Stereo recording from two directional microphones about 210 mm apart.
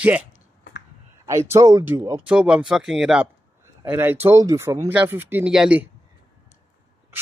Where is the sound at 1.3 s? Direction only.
15° right (ahead or behind).